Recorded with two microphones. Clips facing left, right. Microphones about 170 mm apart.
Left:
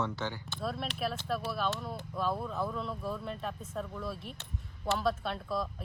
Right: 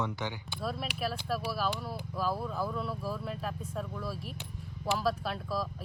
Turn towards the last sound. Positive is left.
turn(degrees=0)  # may be behind; listen again after turning